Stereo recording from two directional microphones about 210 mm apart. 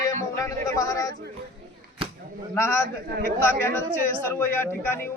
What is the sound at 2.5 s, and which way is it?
A man's voice, 10° left (ahead or behind).